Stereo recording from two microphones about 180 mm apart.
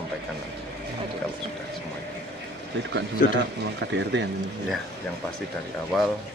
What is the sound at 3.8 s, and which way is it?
Speech, 80° right.